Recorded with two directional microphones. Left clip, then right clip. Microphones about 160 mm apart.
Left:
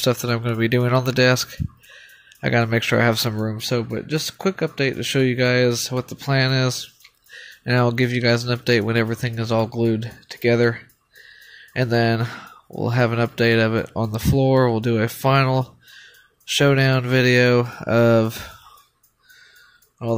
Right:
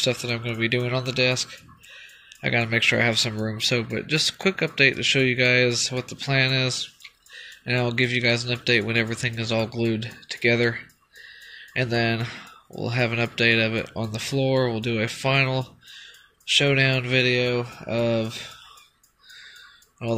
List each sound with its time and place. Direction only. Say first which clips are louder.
0.0 s speech: left 3 dB; 45° left (ahead or behind)